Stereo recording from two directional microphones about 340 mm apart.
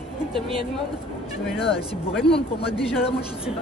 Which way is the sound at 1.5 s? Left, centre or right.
Centre.